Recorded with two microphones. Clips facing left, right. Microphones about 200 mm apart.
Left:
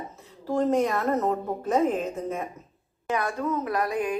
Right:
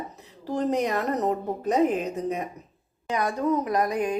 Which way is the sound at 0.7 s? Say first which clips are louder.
Left 1 dB; 20° right (ahead or behind).